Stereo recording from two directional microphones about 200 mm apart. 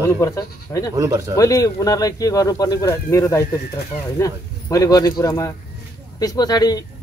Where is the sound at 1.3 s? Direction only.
15° left (ahead or behind).